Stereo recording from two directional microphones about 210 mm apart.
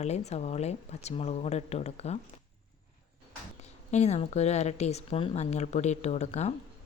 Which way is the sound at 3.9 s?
30° left (ahead or behind).